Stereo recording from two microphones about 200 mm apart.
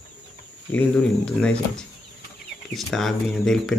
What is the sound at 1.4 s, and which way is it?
Speech, 5° left (ahead or behind).